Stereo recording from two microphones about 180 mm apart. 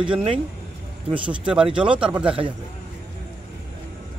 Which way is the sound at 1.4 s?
5° right (ahead or behind).